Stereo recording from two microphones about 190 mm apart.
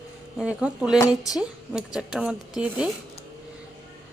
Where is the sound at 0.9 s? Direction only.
20° left (ahead or behind).